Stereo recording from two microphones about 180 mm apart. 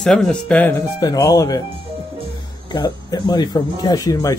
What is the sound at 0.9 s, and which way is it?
Speech, 20° left (ahead or behind).